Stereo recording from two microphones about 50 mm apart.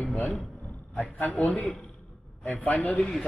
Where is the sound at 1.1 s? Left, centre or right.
Left.